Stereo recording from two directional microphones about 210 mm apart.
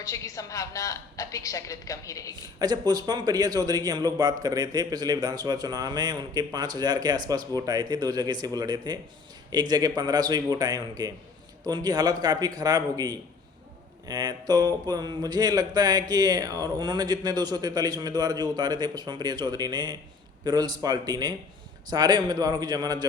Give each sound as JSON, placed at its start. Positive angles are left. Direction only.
{"t": 0.0, "sound": "a woman's voice", "side_deg": 15}
{"t": 2.3, "sound": "a man's voice", "side_deg": -20}